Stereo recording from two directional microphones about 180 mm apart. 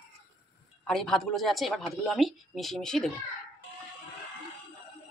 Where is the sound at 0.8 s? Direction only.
5° left (ahead or behind).